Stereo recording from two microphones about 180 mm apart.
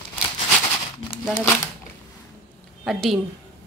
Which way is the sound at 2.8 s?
Centre (ahead or behind).